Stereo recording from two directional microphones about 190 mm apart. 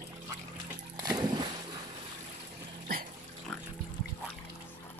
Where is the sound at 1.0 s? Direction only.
20° right (ahead or behind).